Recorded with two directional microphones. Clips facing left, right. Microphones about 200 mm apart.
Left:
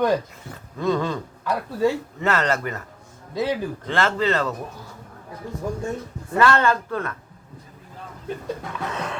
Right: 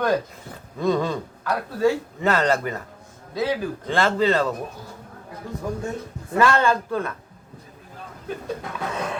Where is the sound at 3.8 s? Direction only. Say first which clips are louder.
Right 2 dB; 15° right (ahead or behind).